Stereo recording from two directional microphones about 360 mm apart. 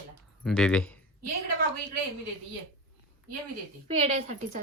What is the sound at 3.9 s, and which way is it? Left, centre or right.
Speech, centre.